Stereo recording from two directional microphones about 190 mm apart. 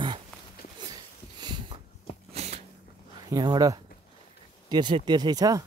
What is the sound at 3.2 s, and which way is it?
Speech, 20° right (ahead or behind).